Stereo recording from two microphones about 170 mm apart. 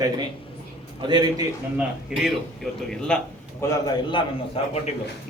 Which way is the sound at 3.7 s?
25° left (ahead or behind).